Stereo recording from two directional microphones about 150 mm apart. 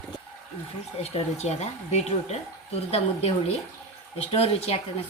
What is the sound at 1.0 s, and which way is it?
A woman's voice, 45° left (ahead or behind).